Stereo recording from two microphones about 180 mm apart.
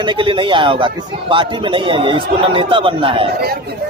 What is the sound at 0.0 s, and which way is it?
A man's voice, 25° right (ahead or behind).